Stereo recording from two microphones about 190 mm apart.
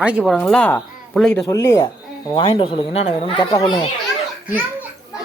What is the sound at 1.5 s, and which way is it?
Speech, 15° left (ahead or behind).